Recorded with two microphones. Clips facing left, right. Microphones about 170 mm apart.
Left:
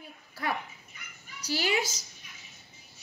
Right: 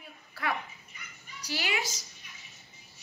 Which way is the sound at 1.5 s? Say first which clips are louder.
Left 5 dB; 40° left (ahead or behind).